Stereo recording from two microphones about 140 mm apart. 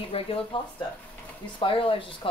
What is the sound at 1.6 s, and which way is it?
Speech, 40° left (ahead or behind).